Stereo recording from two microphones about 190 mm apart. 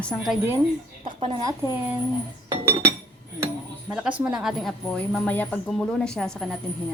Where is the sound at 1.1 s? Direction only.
25° right (ahead or behind).